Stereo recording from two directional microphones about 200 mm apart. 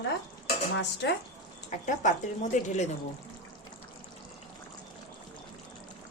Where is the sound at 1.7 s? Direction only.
40° left (ahead or behind).